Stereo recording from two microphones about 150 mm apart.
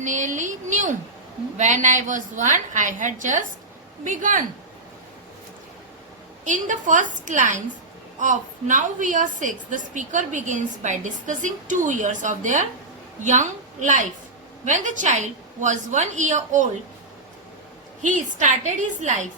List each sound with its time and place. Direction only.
0.0 s a woman's voice: 55° right (ahead or behind)
6.4 s a woman's voice: 55° right (ahead or behind)
18.0 s a woman's voice: 55° right (ahead or behind)